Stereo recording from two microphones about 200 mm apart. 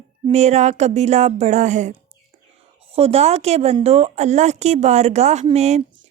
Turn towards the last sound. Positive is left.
turn(degrees=-35)  # may be behind; listen again after turning